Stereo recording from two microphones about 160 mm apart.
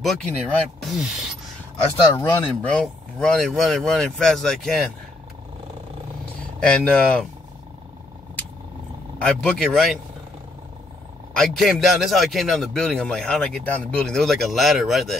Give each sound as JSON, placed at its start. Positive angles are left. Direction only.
{"t": 0.0, "sound": "a man's voice", "side_deg": 5}
{"t": 2.1, "sound": "a man's voice", "side_deg": 10}
{"t": 6.6, "sound": "a man's voice", "side_deg": 5}
{"t": 9.2, "sound": "a man's voice", "side_deg": 5}
{"t": 11.3, "sound": "a man's voice", "side_deg": 5}